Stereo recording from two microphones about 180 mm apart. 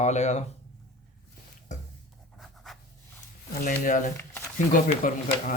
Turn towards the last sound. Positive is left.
turn(degrees=50)  # may be behind; listen again after turning